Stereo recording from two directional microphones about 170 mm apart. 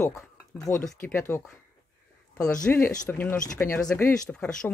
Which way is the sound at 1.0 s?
15° left (ahead or behind).